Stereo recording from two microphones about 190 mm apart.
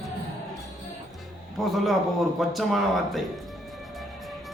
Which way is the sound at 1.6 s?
Centre (ahead or behind).